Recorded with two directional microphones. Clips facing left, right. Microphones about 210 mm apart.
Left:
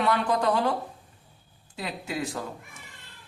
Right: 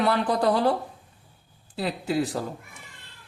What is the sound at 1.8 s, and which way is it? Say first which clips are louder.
Speech: right 6 dB; 35° right (ahead or behind).